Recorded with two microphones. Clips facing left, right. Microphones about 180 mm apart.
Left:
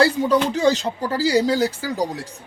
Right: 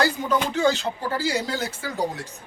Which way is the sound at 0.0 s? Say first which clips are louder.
Left 6 dB; 35° left (ahead or behind).